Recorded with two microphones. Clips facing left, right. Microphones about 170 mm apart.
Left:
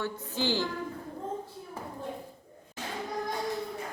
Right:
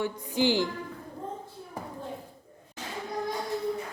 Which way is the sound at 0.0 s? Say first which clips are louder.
Right 5 dB; 15° right (ahead or behind).